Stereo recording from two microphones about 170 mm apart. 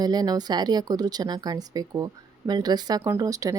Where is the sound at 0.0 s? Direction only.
25° right (ahead or behind).